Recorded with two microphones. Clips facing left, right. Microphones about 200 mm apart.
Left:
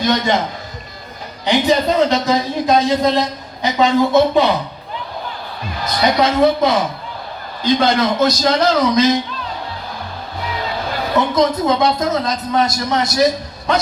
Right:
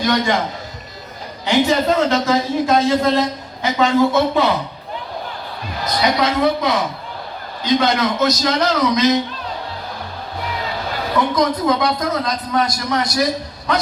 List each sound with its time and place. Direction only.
0.0 s speech: 20° left (ahead or behind)
1.5 s speech: 15° left (ahead or behind)
6.4 s speech: 25° left (ahead or behind)
11.2 s speech: 25° left (ahead or behind)